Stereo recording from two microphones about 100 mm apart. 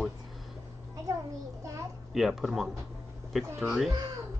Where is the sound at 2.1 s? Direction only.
Centre (ahead or behind).